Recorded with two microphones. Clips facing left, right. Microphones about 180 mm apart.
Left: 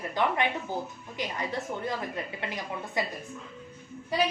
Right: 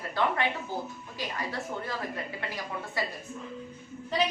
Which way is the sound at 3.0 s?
20° left (ahead or behind).